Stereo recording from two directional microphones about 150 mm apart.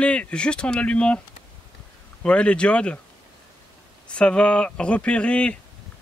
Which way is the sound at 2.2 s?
5° left (ahead or behind).